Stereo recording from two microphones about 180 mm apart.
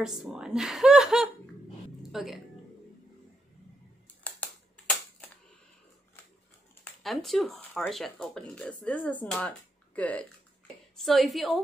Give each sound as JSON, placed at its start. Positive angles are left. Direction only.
{"t": 0.0, "sound": "speech", "side_deg": -5}
{"t": 4.2, "sound": "a sound", "side_deg": 10}
{"t": 7.0, "sound": "speech", "side_deg": 0}